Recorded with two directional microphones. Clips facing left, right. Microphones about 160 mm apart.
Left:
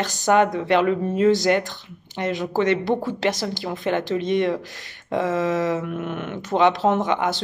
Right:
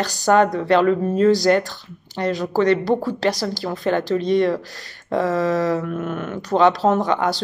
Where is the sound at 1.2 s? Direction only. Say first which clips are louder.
Right 2 dB; 40° right (ahead or behind).